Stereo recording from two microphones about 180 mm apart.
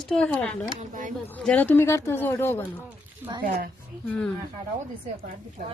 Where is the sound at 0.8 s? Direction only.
45° right (ahead or behind).